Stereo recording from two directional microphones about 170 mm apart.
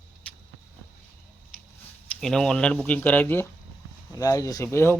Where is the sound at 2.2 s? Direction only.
5° left (ahead or behind).